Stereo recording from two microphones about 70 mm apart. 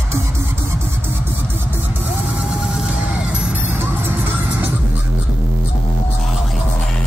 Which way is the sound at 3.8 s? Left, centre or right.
Right.